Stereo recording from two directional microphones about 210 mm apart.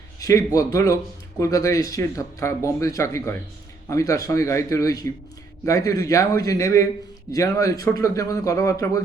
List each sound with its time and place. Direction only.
0.2 s a man's voice: 15° left (ahead or behind)